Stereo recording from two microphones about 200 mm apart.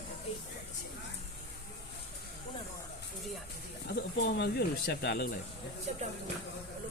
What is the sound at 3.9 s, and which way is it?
Speech, 55° left (ahead or behind).